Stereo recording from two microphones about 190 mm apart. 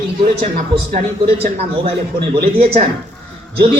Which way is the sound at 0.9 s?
50° right (ahead or behind).